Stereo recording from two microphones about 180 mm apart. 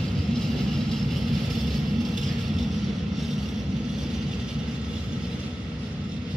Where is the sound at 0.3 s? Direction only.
Centre (ahead or behind).